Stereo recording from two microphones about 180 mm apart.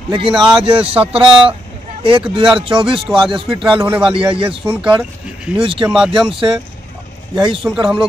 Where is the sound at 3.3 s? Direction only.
30° right (ahead or behind).